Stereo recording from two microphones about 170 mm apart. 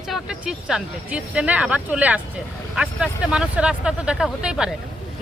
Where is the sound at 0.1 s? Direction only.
5° right (ahead or behind).